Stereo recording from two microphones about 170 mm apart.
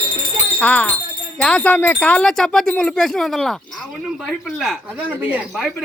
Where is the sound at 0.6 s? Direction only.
10° left (ahead or behind).